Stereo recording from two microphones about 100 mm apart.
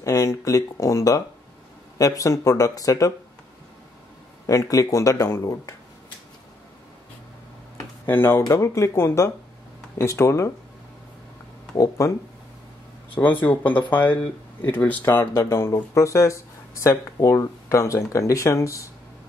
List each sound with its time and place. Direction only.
0.0 s speech: 35° left (ahead or behind)
4.5 s speech: 35° left (ahead or behind)
8.0 s speech: 25° left (ahead or behind)
11.7 s speech: 35° left (ahead or behind)
13.1 s speech: 20° left (ahead or behind)